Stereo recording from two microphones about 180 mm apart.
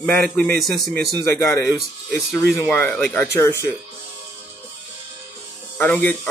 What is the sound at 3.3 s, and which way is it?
Speech, 15° left (ahead or behind).